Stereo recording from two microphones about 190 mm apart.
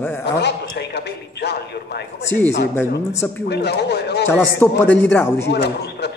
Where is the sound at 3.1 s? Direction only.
15° left (ahead or behind).